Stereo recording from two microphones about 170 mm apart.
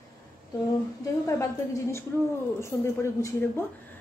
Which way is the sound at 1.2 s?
15° left (ahead or behind).